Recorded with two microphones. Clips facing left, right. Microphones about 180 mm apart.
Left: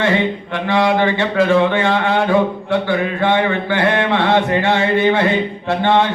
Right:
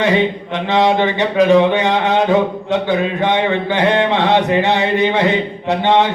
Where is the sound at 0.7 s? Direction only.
20° right (ahead or behind).